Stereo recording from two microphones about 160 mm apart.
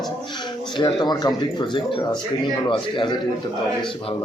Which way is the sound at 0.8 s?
30° left (ahead or behind).